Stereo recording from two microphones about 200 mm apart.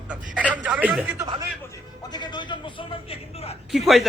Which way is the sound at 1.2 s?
15° right (ahead or behind).